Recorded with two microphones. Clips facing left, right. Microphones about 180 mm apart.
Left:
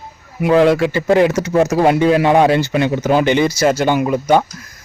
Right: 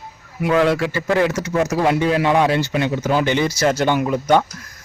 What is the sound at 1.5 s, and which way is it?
Speech, 30° left (ahead or behind).